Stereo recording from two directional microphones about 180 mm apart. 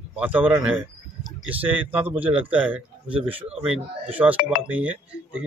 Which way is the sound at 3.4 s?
35° right (ahead or behind).